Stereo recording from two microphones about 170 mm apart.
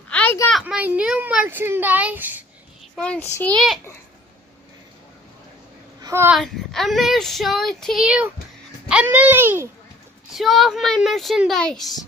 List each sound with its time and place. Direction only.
0.1 s a sound: 10° left (ahead or behind)
0.6 s a child's voice: 5° right (ahead or behind)
3.0 s a child's voice: 5° left (ahead or behind)
5.9 s a sound: 20° right (ahead or behind)
6.3 s a child's voice: centre (ahead or behind)
10.3 s speech: centre (ahead or behind)